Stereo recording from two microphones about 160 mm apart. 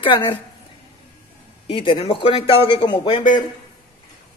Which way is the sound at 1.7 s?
35° left (ahead or behind).